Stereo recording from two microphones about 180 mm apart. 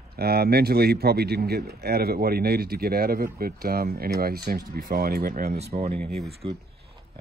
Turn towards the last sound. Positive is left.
turn(degrees=0)  # may be behind; listen again after turning